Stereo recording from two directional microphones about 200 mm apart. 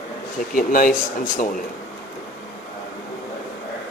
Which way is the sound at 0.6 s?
45° left (ahead or behind).